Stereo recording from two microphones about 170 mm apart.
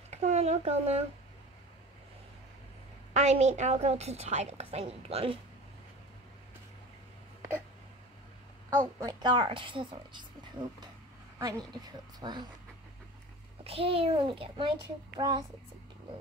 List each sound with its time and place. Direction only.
0.1 s speech: 40° right (ahead or behind)
3.1 s a woman's voice: 40° right (ahead or behind)
8.6 s a woman's voice: 20° right (ahead or behind)
11.3 s a woman's voice: 20° right (ahead or behind)
13.7 s a woman's voice: 35° right (ahead or behind)